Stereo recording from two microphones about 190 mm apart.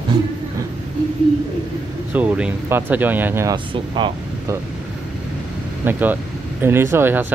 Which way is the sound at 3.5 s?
25° right (ahead or behind).